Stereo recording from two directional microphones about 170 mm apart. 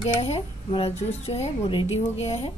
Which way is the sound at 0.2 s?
35° left (ahead or behind).